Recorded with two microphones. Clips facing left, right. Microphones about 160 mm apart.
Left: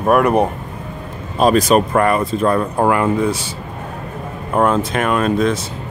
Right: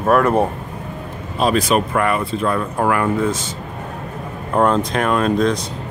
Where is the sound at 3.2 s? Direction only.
10° left (ahead or behind).